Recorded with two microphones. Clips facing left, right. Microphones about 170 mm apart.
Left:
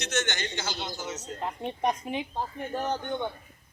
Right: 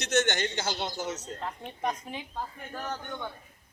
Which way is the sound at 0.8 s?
60° right (ahead or behind).